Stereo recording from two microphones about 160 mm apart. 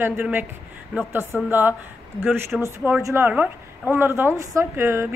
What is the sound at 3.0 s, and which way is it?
A woman's voice, 15° right (ahead or behind).